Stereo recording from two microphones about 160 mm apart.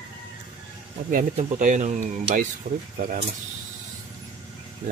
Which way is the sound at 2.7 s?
75° right (ahead or behind).